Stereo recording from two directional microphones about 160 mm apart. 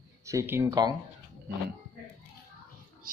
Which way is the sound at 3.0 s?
60° right (ahead or behind).